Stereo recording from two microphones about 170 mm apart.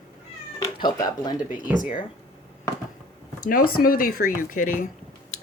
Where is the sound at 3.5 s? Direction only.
60° left (ahead or behind).